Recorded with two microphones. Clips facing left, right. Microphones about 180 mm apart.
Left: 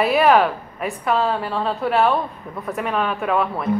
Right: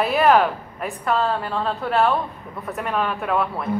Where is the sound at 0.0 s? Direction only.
Centre (ahead or behind).